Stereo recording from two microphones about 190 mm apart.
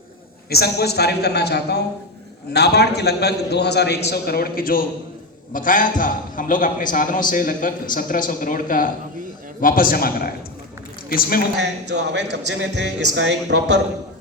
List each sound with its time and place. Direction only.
0.5 s a man's voice: 55° left (ahead or behind)
11.5 s speech: 65° right (ahead or behind)